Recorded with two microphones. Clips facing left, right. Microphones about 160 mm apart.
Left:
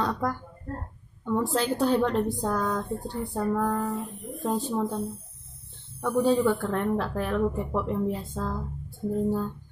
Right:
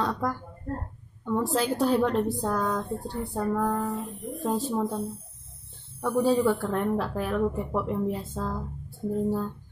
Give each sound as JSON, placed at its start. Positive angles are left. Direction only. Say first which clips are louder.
{"t": 0.0, "sound": "a sound", "louder": "even", "side_deg": 0}
{"t": 1.2, "sound": "a woman's voice", "louder": "even", "side_deg": 0}
{"t": 5.9, "sound": "speech", "louder": "even", "side_deg": -10}